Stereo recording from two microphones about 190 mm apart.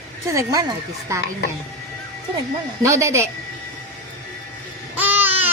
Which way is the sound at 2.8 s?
15° right (ahead or behind).